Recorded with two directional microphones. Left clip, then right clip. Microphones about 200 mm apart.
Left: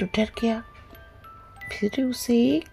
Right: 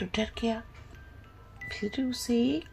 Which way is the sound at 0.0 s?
35° left (ahead or behind).